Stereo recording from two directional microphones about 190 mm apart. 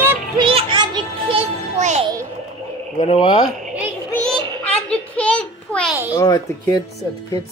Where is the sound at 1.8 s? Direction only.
40° right (ahead or behind).